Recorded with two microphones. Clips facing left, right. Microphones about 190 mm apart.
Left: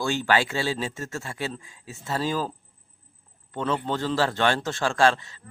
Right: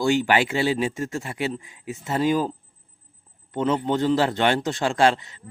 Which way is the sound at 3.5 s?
20° right (ahead or behind).